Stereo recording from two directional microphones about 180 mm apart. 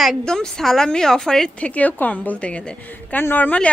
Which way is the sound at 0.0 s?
Centre (ahead or behind).